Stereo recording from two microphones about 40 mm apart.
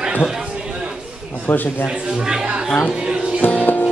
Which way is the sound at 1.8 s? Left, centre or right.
Centre.